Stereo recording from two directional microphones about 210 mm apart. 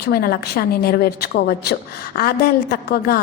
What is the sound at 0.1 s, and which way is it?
A woman's voice, 45° left (ahead or behind).